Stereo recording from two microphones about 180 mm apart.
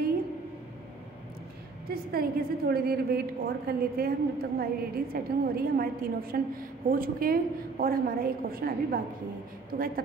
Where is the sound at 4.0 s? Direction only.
55° right (ahead or behind).